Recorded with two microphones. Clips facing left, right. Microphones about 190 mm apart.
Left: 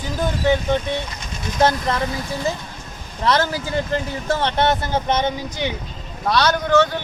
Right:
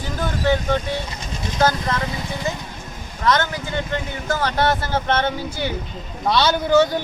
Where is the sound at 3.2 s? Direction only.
30° left (ahead or behind); by 5.3 s 15° left (ahead or behind).